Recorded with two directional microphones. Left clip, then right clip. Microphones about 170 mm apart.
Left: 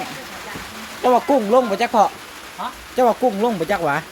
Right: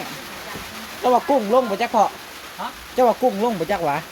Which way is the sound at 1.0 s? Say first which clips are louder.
Left 2 dB; 25° left (ahead or behind).